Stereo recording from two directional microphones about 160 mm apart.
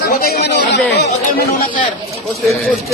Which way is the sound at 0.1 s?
65° left (ahead or behind).